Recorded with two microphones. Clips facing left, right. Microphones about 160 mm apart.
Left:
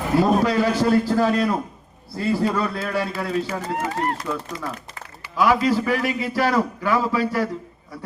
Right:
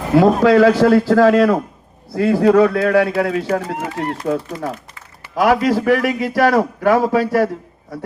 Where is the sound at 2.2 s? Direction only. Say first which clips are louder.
Right 10 dB; 70° right (ahead or behind); by 4.7 s 55° right (ahead or behind).